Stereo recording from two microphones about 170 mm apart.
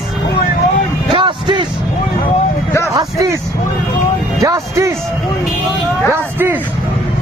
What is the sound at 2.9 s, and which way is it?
Vehicle, 20° right (ahead or behind).